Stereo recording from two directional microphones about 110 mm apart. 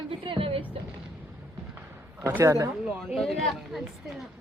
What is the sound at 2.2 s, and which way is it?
Speech, 25° right (ahead or behind).